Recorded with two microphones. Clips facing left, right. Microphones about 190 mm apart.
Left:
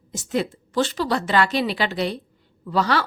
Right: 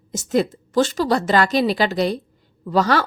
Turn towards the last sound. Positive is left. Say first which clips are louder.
# right 3 dB
turn(degrees=-45)  # may be behind; listen again after turning